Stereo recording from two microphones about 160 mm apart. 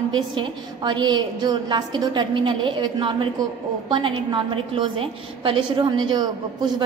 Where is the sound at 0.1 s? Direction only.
30° right (ahead or behind).